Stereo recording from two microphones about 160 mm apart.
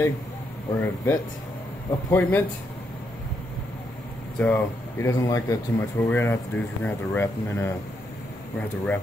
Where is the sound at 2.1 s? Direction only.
15° left (ahead or behind).